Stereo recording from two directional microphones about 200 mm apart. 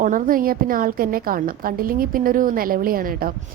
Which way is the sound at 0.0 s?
45° right (ahead or behind).